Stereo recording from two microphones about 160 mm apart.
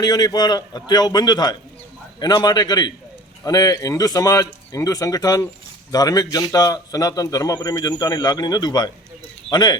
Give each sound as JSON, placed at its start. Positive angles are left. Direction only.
{"t": 0.0, "sound": "a man's voice", "side_deg": 25}